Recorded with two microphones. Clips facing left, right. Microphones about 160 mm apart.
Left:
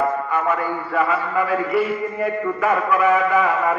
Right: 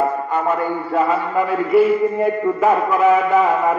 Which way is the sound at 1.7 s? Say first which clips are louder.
Right 7 dB; centre (ahead or behind).